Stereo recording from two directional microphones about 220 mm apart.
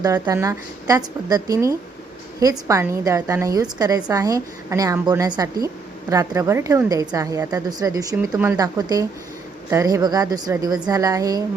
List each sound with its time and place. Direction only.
0.0 s a woman's voice: 15° right (ahead or behind)